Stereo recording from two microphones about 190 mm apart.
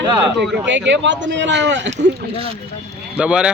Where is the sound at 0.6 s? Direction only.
70° right (ahead or behind).